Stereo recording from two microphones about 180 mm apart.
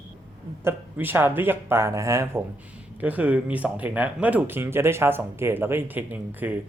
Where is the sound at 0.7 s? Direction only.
10° right (ahead or behind).